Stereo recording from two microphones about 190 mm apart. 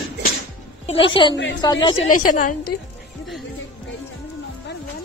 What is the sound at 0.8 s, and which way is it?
A woman's voice, 30° left (ahead or behind).